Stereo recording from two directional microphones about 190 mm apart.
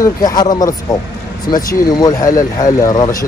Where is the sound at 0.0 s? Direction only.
20° left (ahead or behind).